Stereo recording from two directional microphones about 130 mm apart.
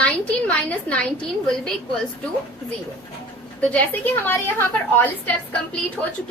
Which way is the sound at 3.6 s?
10° left (ahead or behind).